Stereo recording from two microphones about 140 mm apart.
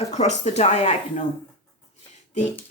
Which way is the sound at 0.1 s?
50° left (ahead or behind).